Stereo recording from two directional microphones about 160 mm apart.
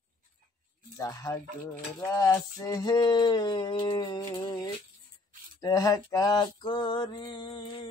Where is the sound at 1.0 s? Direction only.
20° left (ahead or behind).